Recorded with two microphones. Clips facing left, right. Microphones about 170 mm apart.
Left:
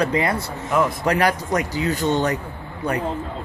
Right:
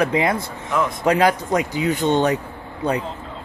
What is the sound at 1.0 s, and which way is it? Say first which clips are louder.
Speech: right 3 dB; 20° right (ahead or behind).